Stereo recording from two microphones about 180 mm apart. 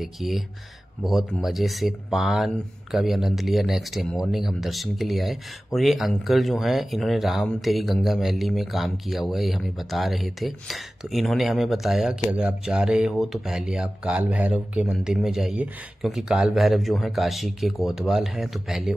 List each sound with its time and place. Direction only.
0.0 s speech: centre (ahead or behind)